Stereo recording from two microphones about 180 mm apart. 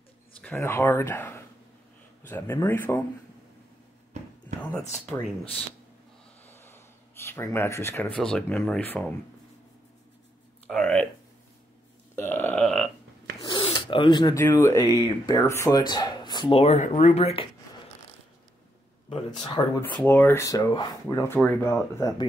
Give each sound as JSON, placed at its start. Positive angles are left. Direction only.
{"t": 0.4, "sound": "speech", "side_deg": 10}
{"t": 4.1, "sound": "a sound", "side_deg": -35}
{"t": 6.4, "sound": "speech", "side_deg": 10}
{"t": 10.7, "sound": "speech", "side_deg": 5}
{"t": 12.2, "sound": "speech", "side_deg": 10}
{"t": 13.5, "sound": "a sound", "side_deg": 25}
{"t": 14.4, "sound": "speech", "side_deg": 15}
{"t": 19.0, "sound": "speech", "side_deg": 25}
{"t": 20.0, "sound": "speech", "side_deg": 10}